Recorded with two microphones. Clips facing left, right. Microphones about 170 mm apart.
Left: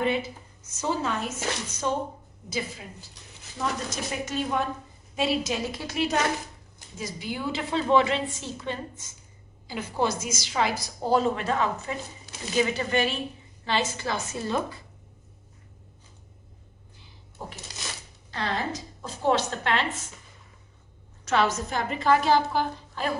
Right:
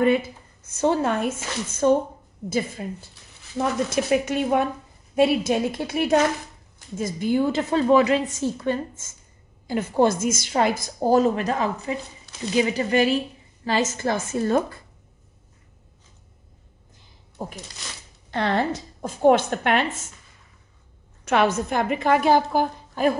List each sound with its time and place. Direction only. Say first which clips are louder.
0.0 s a woman's voice: right 7 dB; 50° right (ahead or behind)
3.5 s a woman's voice: right 8 dB; 60° right (ahead or behind)
18.3 s a woman's voice: right 7 dB; 60° right (ahead or behind)
21.3 s speech: right 4 dB; 55° right (ahead or behind)